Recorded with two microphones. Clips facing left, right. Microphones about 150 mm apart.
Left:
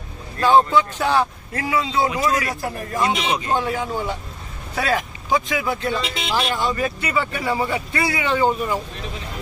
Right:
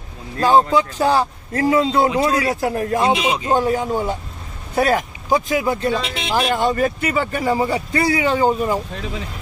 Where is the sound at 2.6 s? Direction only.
70° right (ahead or behind).